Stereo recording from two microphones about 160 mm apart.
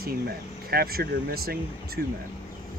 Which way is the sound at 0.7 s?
70° right (ahead or behind).